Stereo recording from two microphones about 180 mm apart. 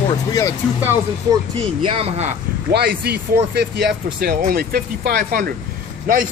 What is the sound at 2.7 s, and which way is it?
Speech, 60° right (ahead or behind).